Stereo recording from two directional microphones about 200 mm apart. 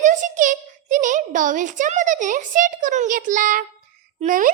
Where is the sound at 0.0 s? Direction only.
40° right (ahead or behind).